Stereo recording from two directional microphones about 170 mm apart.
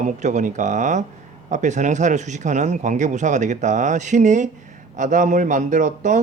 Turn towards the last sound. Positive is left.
turn(degrees=-45)  # may be behind; listen again after turning